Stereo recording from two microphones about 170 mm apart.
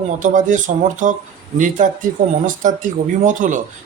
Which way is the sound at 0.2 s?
50° right (ahead or behind).